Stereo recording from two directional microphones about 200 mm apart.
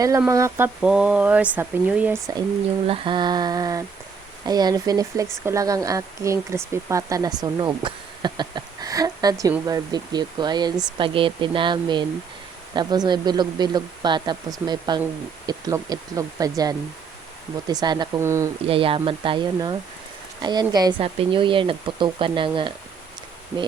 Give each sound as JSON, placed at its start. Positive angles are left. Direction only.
{"t": 0.3, "sound": "speech", "side_deg": -15}
{"t": 2.8, "sound": "speech", "side_deg": -25}
{"t": 18.6, "sound": "speech", "side_deg": -25}